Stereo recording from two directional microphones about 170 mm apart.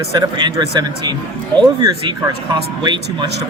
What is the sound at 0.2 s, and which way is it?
A man's voice, 25° right (ahead or behind).